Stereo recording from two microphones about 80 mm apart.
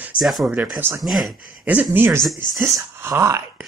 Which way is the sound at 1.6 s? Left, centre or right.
Centre.